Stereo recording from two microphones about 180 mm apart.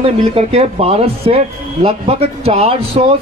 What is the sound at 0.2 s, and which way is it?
A man's voice, 35° right (ahead or behind).